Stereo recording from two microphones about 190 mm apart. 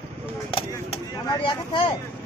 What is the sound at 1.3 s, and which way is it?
Speech, 25° left (ahead or behind).